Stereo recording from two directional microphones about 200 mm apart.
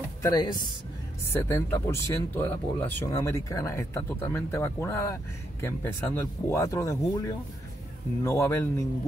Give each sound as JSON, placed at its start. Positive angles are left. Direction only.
{"t": 0.2, "sound": "speech", "side_deg": 20}